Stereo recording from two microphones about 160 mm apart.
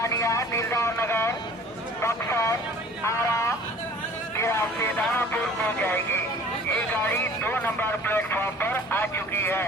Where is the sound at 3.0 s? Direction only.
15° left (ahead or behind).